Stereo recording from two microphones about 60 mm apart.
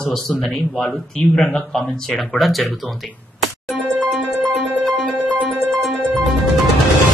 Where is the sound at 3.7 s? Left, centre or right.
Right.